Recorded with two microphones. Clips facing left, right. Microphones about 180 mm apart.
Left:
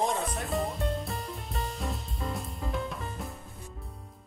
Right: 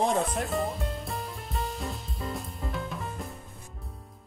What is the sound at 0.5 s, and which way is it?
Music, centre (ahead or behind).